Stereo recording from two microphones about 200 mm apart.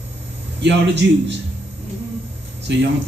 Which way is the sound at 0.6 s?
60° right (ahead or behind).